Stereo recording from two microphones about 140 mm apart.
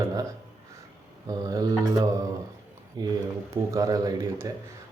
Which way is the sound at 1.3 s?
25° right (ahead or behind).